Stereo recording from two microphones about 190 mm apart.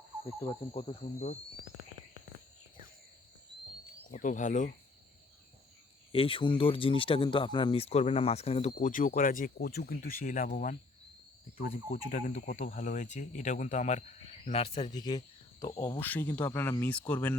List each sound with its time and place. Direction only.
0.7 s speech: 30° left (ahead or behind)
4.1 s speech: 40° left (ahead or behind)
6.1 s speech: 30° left (ahead or behind)
8.7 s speech: 45° left (ahead or behind); by 16.0 s 25° left (ahead or behind)
16.0 s speech: 10° left (ahead or behind)